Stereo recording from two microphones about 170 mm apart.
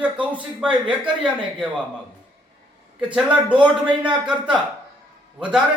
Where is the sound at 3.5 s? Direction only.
30° right (ahead or behind).